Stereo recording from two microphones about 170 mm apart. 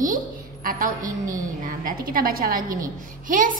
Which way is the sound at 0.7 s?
55° right (ahead or behind).